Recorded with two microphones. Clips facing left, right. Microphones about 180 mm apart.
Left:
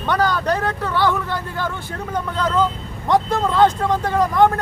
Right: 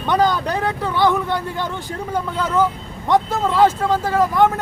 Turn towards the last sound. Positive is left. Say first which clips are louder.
# even
turn(degrees=0)  # may be behind; listen again after turning